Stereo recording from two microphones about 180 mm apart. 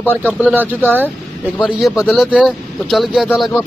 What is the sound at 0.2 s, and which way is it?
Speech, 10° right (ahead or behind).